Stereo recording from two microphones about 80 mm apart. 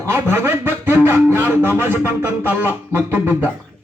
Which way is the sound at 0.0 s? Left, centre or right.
Right.